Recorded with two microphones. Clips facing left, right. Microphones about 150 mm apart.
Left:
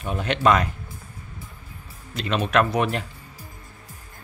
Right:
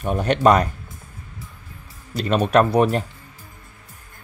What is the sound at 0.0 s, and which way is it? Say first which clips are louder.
Speech: right 5 dB; 45° right (ahead or behind).